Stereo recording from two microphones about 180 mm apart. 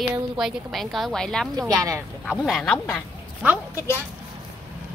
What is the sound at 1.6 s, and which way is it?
Speech, 20° right (ahead or behind).